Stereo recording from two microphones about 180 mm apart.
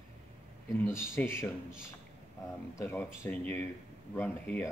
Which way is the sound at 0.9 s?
15° left (ahead or behind).